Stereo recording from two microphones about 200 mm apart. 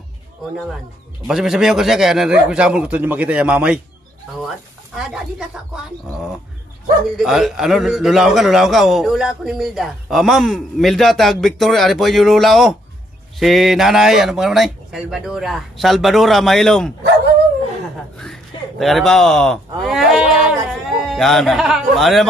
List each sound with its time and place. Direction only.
1.2 s a man's voice: centre (ahead or behind)
4.9 s a man's voice: 5° right (ahead or behind)
7.2 s a man's voice: centre (ahead or behind)
18.1 s a sound: centre (ahead or behind)
21.1 s a man's voice: centre (ahead or behind)